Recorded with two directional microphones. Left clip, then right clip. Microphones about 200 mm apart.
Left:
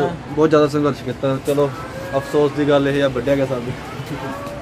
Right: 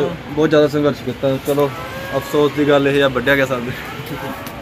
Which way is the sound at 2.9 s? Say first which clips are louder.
Right 3 dB; 20° right (ahead or behind).